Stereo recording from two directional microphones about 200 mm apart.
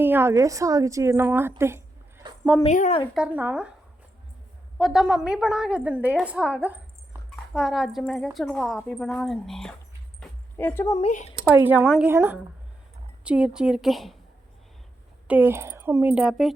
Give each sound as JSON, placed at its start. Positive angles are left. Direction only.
{"t": 0.0, "sound": "a woman's voice", "side_deg": -10}
{"t": 2.6, "sound": "a woman's voice", "side_deg": 35}
{"t": 3.2, "sound": "a woman's voice", "side_deg": -5}
{"t": 4.8, "sound": "a woman's voice", "side_deg": 0}
{"t": 10.2, "sound": "a sound", "side_deg": 10}
{"t": 11.0, "sound": "a woman's voice", "side_deg": 35}
{"t": 11.5, "sound": "a woman's voice", "side_deg": -10}
{"t": 15.3, "sound": "speech", "side_deg": -10}